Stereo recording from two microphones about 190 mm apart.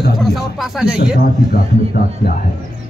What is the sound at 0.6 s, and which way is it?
Speech, 5° right (ahead or behind).